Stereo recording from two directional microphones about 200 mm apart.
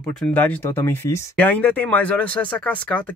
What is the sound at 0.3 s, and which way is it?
Speech, 10° left (ahead or behind).